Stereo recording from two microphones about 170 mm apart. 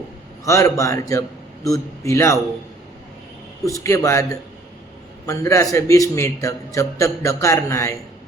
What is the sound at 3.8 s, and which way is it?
Speech, 15° left (ahead or behind).